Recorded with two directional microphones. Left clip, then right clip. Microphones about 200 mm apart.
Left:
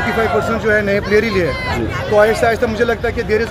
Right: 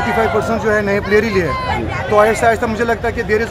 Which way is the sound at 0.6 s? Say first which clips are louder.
Left 2 dB; 5° right (ahead or behind).